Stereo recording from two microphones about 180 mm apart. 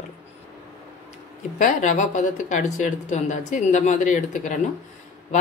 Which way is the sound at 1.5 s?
45° left (ahead or behind).